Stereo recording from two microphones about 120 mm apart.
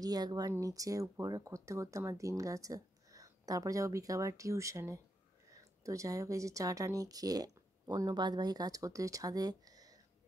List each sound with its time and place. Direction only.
0.0 s speech: 35° right (ahead or behind)